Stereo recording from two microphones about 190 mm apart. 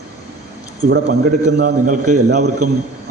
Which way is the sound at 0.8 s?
40° right (ahead or behind).